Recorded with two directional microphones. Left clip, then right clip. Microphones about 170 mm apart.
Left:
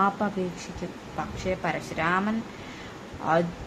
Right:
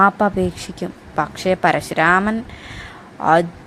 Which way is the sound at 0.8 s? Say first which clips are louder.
Right 13 dB; 50° right (ahead or behind).